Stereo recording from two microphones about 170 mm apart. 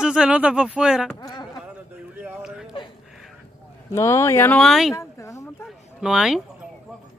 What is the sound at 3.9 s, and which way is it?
Speech, 15° left (ahead or behind).